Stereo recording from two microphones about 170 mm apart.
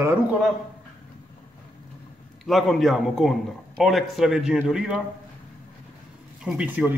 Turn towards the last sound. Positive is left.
turn(degrees=-10)  # may be behind; listen again after turning